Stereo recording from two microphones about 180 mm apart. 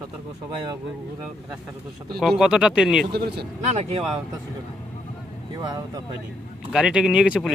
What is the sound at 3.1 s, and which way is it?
Speech, 65° right (ahead or behind).